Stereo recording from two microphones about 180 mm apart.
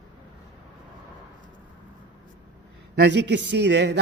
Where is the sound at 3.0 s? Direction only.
70° right (ahead or behind).